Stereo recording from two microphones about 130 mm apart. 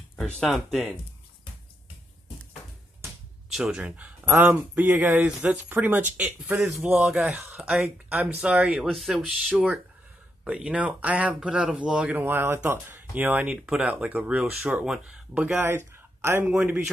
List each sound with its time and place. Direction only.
0.1 s speech: 5° left (ahead or behind)
3.5 s speech: 5° right (ahead or behind)
15.4 s speech: 20° right (ahead or behind)